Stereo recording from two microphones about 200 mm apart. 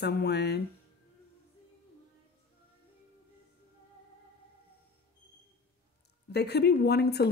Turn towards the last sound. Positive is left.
turn(degrees=55)  # may be behind; listen again after turning